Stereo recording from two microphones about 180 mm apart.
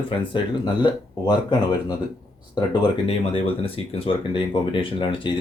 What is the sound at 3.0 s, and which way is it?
Speech, 30° left (ahead or behind).